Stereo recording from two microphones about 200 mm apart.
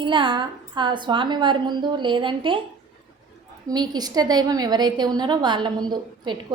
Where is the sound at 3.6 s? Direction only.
20° right (ahead or behind).